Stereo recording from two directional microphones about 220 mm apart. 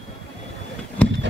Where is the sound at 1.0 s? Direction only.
5° left (ahead or behind).